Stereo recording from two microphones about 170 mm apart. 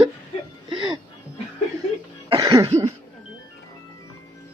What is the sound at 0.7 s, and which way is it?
Music, 30° right (ahead or behind).